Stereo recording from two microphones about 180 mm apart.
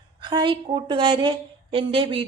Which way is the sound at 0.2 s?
25° right (ahead or behind).